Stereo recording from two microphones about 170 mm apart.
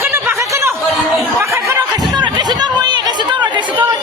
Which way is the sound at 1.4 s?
15° right (ahead or behind).